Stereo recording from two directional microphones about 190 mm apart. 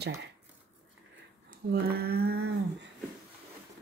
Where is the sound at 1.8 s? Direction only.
55° right (ahead or behind).